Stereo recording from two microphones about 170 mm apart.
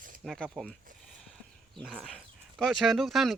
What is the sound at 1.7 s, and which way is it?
Speech, centre (ahead or behind).